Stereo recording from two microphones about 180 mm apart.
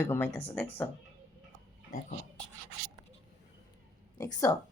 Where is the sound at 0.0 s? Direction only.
15° left (ahead or behind).